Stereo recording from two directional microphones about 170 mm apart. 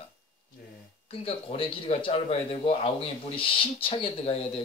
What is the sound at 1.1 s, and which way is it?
Speech, 35° left (ahead or behind).